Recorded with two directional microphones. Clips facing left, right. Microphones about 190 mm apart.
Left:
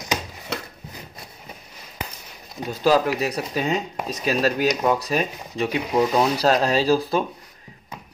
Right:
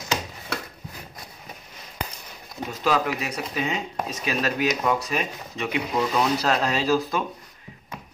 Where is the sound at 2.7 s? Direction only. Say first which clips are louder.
Left 5 dB; 35° left (ahead or behind).